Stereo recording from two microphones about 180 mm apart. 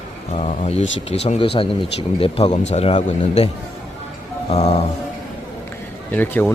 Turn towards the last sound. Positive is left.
turn(degrees=10)  # may be behind; listen again after turning